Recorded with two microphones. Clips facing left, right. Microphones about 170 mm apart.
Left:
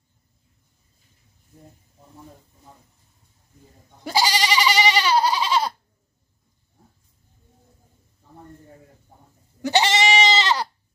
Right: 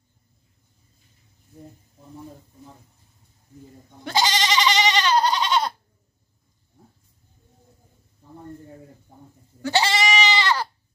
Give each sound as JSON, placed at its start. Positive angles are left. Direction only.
{"t": 4.0, "sound": "goat", "side_deg": 10}
{"t": 9.6, "sound": "goat", "side_deg": 20}